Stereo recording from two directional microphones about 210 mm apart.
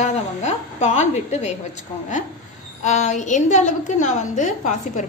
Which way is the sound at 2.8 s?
35° left (ahead or behind).